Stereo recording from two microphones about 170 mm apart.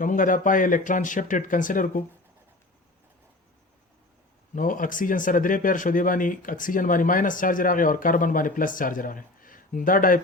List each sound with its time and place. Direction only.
0.0 s speech: 50° left (ahead or behind)
4.5 s speech: 55° left (ahead or behind)